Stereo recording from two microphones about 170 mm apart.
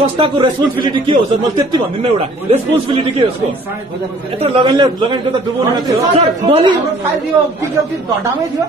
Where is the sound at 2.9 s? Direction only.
35° right (ahead or behind).